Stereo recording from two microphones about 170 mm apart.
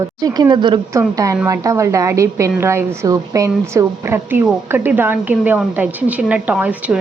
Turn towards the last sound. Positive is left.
turn(degrees=-10)  # may be behind; listen again after turning